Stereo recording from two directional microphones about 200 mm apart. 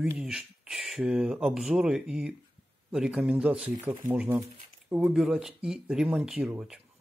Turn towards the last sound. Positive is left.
turn(degrees=-5)  # may be behind; listen again after turning